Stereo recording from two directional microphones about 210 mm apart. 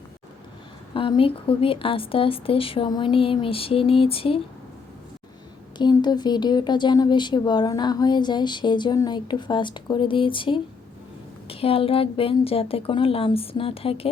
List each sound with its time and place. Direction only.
0.9 s speech: 25° left (ahead or behind)
5.7 s speech: 20° left (ahead or behind)